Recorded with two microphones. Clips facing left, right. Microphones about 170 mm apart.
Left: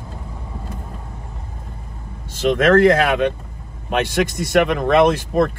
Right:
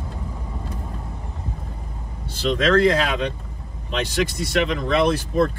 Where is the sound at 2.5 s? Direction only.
60° left (ahead or behind).